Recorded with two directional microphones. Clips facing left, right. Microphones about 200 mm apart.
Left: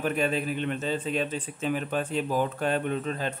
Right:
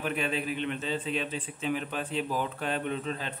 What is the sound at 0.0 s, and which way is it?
A man's voice, 45° left (ahead or behind).